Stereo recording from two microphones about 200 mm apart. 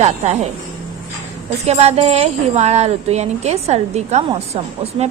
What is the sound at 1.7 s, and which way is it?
A woman's voice, 30° right (ahead or behind).